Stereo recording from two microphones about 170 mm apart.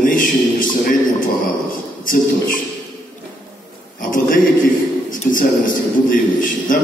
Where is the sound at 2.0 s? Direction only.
55° left (ahead or behind).